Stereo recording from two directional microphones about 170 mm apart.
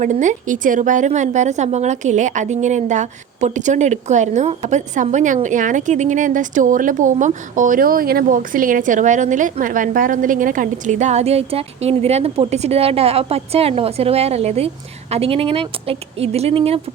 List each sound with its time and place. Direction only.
0.0 s a woman's voice: 45° right (ahead or behind)